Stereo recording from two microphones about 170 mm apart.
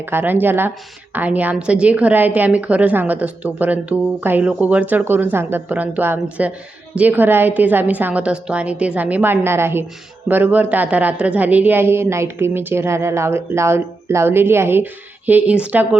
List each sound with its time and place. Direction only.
0.0 s a woman's voice: 10° right (ahead or behind)